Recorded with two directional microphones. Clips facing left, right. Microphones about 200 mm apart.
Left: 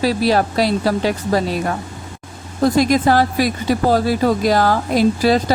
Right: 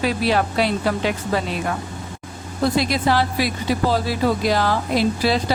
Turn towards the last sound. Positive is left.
turn(degrees=45)  # may be behind; listen again after turning